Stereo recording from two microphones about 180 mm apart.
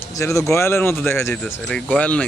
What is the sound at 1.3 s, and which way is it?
Speech, 5° left (ahead or behind).